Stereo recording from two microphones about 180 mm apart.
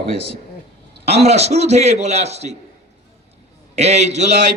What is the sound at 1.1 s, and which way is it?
A man's voice, 35° right (ahead or behind).